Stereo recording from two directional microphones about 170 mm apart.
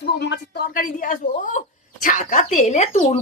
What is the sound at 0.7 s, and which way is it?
Speech, 50° left (ahead or behind).